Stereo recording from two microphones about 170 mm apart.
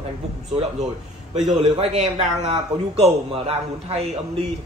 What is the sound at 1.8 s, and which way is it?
A man's voice, 40° right (ahead or behind).